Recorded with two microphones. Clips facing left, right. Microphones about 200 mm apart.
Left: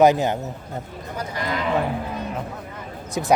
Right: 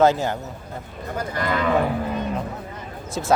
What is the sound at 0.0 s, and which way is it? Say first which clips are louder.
Speech: left 2 dB; 15° left (ahead or behind).